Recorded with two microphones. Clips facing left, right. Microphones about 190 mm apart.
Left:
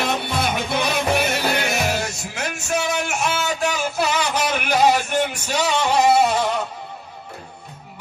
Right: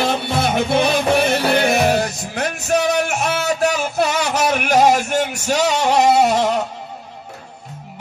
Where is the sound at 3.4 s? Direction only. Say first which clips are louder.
Right 4 dB; 40° right (ahead or behind).